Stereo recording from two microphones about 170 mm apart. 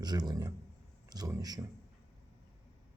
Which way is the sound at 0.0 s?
25° right (ahead or behind).